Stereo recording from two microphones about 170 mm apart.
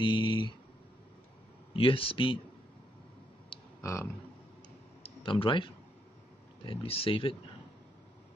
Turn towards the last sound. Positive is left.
turn(degrees=30)  # may be behind; listen again after turning